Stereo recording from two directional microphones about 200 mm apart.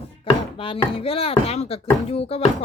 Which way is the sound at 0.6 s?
25° left (ahead or behind).